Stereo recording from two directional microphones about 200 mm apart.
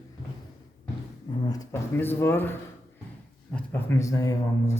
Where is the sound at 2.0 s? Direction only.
10° left (ahead or behind).